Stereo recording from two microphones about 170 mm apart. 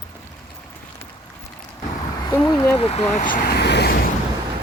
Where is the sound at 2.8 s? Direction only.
40° left (ahead or behind); by 4.1 s 75° left (ahead or behind).